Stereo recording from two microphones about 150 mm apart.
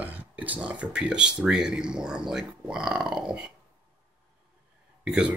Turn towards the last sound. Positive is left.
turn(degrees=-5)  # may be behind; listen again after turning